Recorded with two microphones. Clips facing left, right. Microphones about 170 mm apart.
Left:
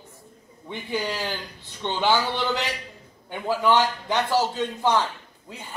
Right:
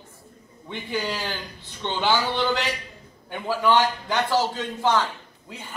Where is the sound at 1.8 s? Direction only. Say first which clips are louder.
Left 1 dB; 15° left (ahead or behind).